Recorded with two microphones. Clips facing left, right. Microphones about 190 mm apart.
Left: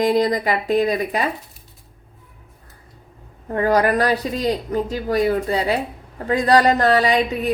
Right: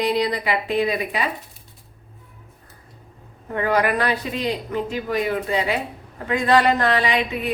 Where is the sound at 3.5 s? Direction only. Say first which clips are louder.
Left 3 dB; 40° left (ahead or behind).